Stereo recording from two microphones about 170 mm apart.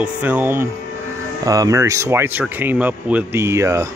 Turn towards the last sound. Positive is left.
turn(degrees=-15)  # may be behind; listen again after turning